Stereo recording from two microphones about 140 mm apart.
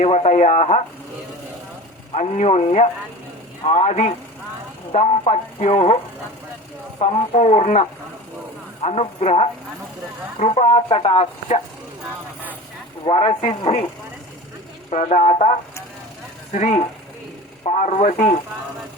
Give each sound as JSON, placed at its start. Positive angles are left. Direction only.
{"t": 0.0, "sound": "speech", "side_deg": 50}
{"t": 2.1, "sound": "speech", "side_deg": 50}
{"t": 7.0, "sound": "speech", "side_deg": 50}
{"t": 13.1, "sound": "speech", "side_deg": 50}
{"t": 14.8, "sound": "speech", "side_deg": 55}